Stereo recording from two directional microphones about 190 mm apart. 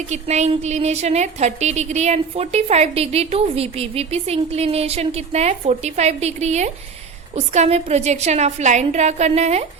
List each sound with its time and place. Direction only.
0.1 s a woman's voice: 35° right (ahead or behind)